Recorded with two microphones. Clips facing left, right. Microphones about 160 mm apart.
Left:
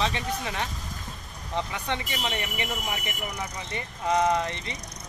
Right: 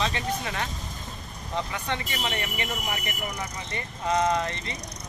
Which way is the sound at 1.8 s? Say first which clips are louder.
Even; 15° left (ahead or behind).